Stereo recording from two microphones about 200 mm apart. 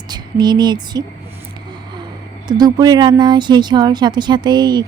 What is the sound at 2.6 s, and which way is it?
Speech, 20° right (ahead or behind).